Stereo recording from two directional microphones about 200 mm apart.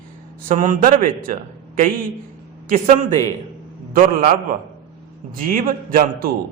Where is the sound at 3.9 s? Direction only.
40° right (ahead or behind).